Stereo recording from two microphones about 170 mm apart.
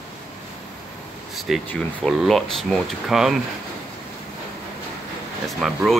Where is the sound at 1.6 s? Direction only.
5° left (ahead or behind).